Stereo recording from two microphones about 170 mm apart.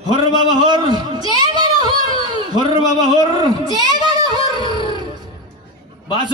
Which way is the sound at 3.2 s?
20° right (ahead or behind).